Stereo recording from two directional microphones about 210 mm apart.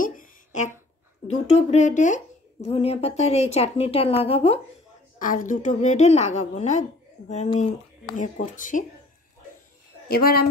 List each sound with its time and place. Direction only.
0.0 s a sound: 35° left (ahead or behind)
1.5 s speech: 35° left (ahead or behind)
5.2 s a woman's voice: 40° left (ahead or behind)
10.0 s a woman's voice: 45° left (ahead or behind)